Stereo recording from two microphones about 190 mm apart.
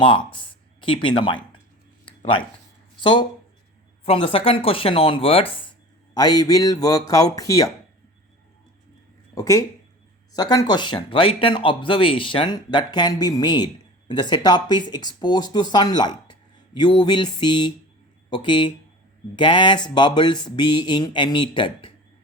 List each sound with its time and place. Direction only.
0.0 s speech: 25° left (ahead or behind)
3.0 s speech: 25° left (ahead or behind)
9.3 s speech: 15° left (ahead or behind)